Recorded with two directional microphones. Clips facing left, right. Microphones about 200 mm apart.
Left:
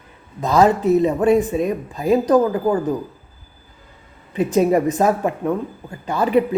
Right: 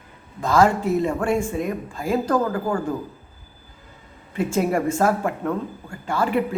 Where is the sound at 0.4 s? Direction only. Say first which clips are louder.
Left 3 dB; 20° left (ahead or behind).